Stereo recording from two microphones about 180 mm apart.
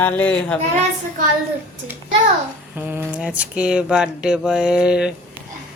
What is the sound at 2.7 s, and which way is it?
Speech, 10° right (ahead or behind).